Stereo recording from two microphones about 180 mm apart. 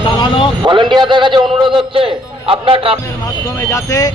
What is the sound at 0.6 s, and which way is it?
A man's voice, 25° right (ahead or behind).